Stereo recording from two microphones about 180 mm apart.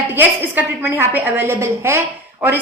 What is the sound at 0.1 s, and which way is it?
A woman's voice, 10° right (ahead or behind).